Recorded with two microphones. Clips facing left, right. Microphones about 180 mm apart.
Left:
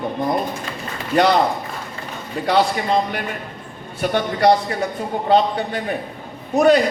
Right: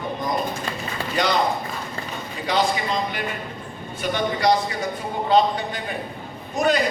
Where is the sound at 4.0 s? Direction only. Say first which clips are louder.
Left 4 dB; 60° left (ahead or behind).